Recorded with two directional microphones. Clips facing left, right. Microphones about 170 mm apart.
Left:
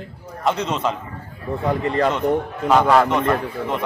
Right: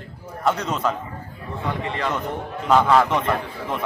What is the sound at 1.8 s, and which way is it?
Speech, 45° left (ahead or behind).